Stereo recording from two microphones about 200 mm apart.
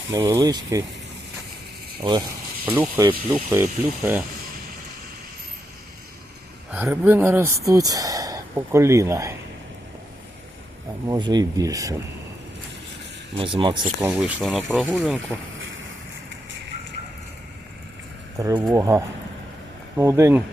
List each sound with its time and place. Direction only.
0.1 s speech: 15° right (ahead or behind)
2.6 s speech: 5° right (ahead or behind)
6.7 s speech: 10° right (ahead or behind)
11.1 s speech: 20° right (ahead or behind)
13.3 s speech: 25° right (ahead or behind)
14.0 s speech: 5° right (ahead or behind)
18.3 s speech: 15° right (ahead or behind)